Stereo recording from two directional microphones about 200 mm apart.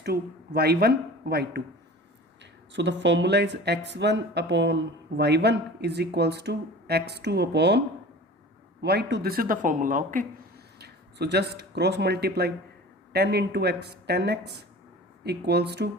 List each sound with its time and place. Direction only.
0.0 s speech: 50° right (ahead or behind)
2.7 s speech: 60° right (ahead or behind)
8.8 s speech: 55° right (ahead or behind); by 10.2 s 40° right (ahead or behind)
10.8 s speech: 55° right (ahead or behind)